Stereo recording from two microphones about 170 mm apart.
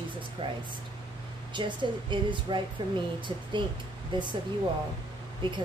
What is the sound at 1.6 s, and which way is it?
A woman's voice, 30° right (ahead or behind).